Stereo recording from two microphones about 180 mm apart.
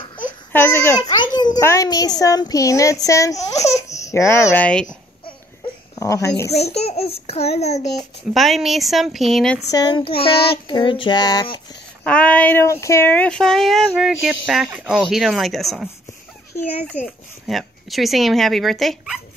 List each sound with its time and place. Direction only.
0.5 s speech: 10° left (ahead or behind)
1.1 s a child's voice: 25° left (ahead or behind)
3.9 s babbling: 40° left (ahead or behind)
4.5 s speech: 5° left (ahead or behind)
5.9 s a woman's voice: 15° left (ahead or behind)
6.5 s a child's voice: 35° left (ahead or behind)
7.9 s speech: centre (ahead or behind)
9.7 s a child's voice: 20° left (ahead or behind)
12.0 s speech: 5° left (ahead or behind)
16.9 s speech: centre (ahead or behind)